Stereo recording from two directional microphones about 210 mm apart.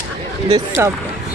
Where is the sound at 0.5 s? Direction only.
15° right (ahead or behind).